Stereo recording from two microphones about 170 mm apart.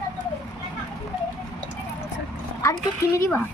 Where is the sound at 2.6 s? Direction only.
15° left (ahead or behind).